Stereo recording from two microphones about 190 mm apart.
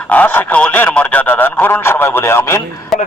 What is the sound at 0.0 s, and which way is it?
A man's voice, 10° left (ahead or behind).